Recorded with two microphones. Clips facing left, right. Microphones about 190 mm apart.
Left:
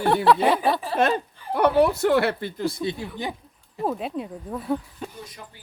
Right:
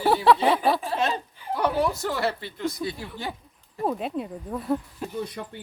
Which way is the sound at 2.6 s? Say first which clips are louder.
Left 3 dB; 30° left (ahead or behind).